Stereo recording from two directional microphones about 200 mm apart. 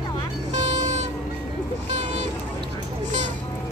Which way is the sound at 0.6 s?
35° right (ahead or behind).